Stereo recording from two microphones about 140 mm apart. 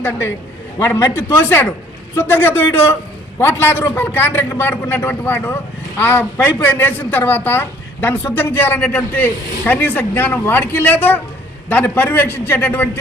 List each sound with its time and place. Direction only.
0.8 s a man's voice: 15° left (ahead or behind)